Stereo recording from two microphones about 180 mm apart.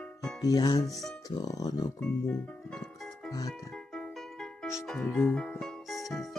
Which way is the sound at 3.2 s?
20° left (ahead or behind).